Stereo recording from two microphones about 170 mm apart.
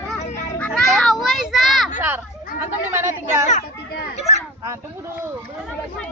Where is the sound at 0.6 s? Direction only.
5° left (ahead or behind).